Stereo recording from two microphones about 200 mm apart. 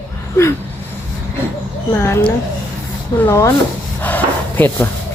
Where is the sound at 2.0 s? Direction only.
10° left (ahead or behind).